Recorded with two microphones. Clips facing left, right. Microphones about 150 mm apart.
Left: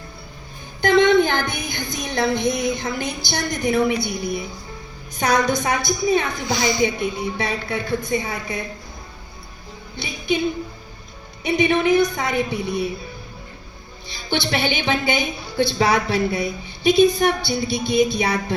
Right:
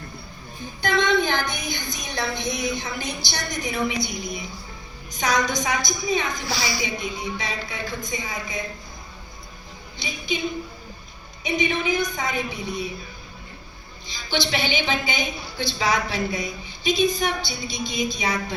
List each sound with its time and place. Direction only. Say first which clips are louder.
0.8 s a woman's voice: left 7 dB; 55° left (ahead or behind)
6.4 s speech: left 6 dB; 20° left (ahead or behind)
6.8 s a woman's voice: left 7 dB; 60° left (ahead or behind)
10.0 s a woman's voice: left 2 dB; 60° left (ahead or behind)
11.4 s a woman's voice: left 6 dB; 65° left (ahead or behind)
14.3 s a woman's voice: left 3 dB; 55° left (ahead or behind)